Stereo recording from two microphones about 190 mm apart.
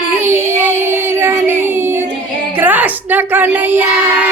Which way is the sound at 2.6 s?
10° right (ahead or behind).